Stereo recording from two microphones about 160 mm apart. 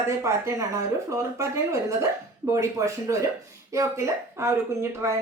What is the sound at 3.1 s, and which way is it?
A woman's voice, 20° right (ahead or behind).